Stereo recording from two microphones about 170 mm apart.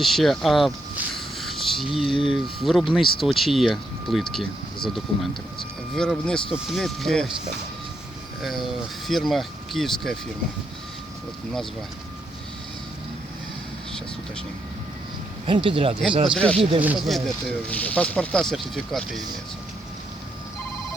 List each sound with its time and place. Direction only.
0.0 s speech: centre (ahead or behind)
8.4 s speech: centre (ahead or behind)
15.4 s speech: 30° right (ahead or behind)
16.3 s speech: 5° left (ahead or behind)
16.8 s speech: 10° right (ahead or behind)
17.2 s speech: 5° left (ahead or behind)